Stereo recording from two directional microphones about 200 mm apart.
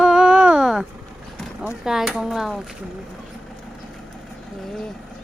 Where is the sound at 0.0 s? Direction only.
5° right (ahead or behind).